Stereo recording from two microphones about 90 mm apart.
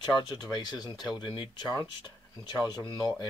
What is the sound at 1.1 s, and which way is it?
Speech, 65° left (ahead or behind).